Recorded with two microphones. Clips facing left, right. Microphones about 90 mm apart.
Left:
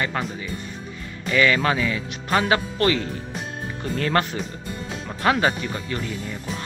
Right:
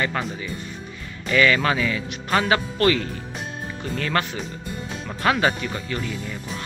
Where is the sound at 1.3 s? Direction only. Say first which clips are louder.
Right 1 dB; 20° left (ahead or behind).